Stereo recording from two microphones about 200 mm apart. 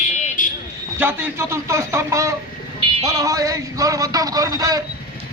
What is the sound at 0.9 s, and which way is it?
Speech, 10° right (ahead or behind).